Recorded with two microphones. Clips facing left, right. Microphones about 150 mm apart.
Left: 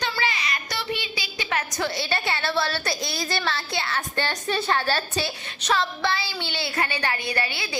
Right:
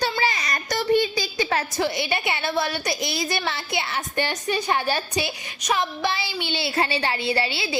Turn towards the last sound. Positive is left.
turn(degrees=-25)  # may be behind; listen again after turning